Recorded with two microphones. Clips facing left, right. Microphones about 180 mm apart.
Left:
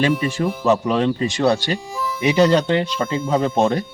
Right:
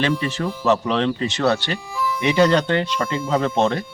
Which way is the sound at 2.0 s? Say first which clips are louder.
Even; 25° left (ahead or behind).